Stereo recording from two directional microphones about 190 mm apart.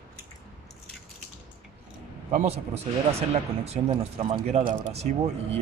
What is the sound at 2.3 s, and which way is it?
Speech, 35° right (ahead or behind).